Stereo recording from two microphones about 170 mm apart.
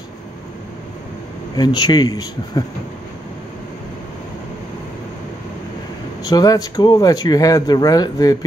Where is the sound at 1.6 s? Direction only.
25° left (ahead or behind).